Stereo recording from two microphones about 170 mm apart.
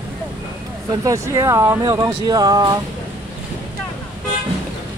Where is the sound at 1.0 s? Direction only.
20° right (ahead or behind).